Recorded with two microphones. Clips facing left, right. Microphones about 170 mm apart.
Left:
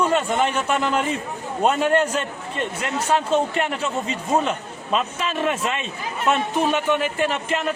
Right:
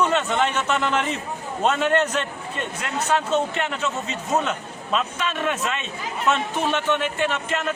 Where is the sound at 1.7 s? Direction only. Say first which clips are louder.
Left 1 dB; 40° left (ahead or behind).